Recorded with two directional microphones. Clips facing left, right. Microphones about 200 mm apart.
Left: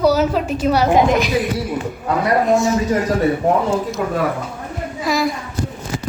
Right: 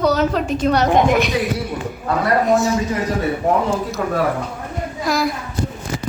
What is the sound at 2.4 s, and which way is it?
Speech, centre (ahead or behind).